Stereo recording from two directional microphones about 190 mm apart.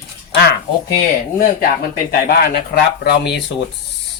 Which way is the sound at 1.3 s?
45° left (ahead or behind).